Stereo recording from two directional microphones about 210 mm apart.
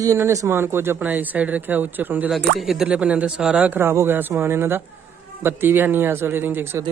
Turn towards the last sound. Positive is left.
turn(degrees=-10)  # may be behind; listen again after turning